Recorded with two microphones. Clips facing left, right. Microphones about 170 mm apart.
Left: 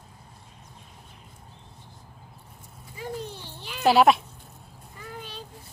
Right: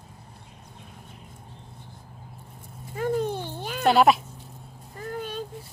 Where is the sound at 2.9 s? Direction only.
55° right (ahead or behind).